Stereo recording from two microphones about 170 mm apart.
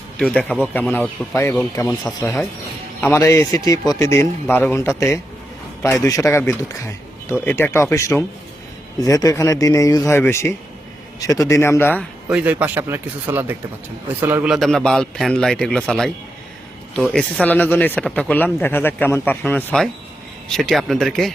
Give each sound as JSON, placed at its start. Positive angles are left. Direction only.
{"t": 0.2, "sound": "a man's voice", "side_deg": 5}
{"t": 12.3, "sound": "a man's voice", "side_deg": -10}